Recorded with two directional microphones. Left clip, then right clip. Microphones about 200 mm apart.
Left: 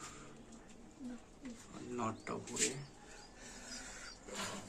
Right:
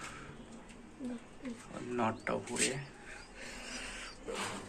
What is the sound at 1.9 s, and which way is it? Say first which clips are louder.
Speech: right 7 dB; centre (ahead or behind).